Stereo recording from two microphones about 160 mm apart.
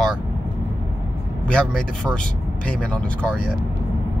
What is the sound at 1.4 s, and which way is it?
Speech, 5° left (ahead or behind).